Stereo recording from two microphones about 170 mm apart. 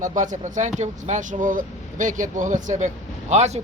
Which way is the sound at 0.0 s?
50° right (ahead or behind).